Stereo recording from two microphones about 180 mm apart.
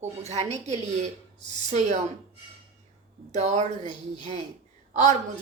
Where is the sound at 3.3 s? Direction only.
40° right (ahead or behind).